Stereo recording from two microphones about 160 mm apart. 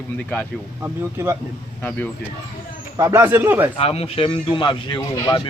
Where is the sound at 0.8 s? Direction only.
15° right (ahead or behind).